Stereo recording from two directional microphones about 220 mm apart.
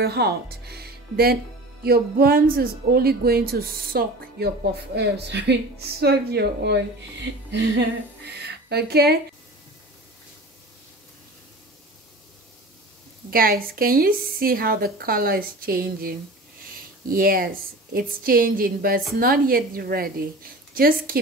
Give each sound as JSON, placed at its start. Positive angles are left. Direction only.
{"t": 0.0, "sound": "speech", "side_deg": -45}
{"t": 13.3, "sound": "a woman's voice", "side_deg": -40}